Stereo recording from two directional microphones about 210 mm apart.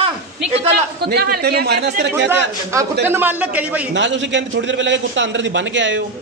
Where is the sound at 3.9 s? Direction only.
60° right (ahead or behind).